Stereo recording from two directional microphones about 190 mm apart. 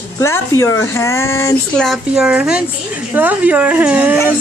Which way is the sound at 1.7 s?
Centre (ahead or behind).